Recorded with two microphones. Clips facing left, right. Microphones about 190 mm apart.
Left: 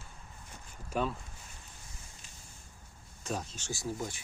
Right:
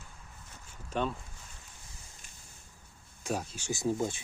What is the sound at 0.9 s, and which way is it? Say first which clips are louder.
Speech: even; 5° left (ahead or behind).